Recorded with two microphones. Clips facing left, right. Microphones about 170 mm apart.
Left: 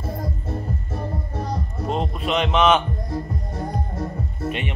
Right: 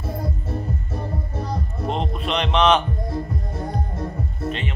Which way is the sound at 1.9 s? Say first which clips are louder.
Left 1 dB; 5° left (ahead or behind).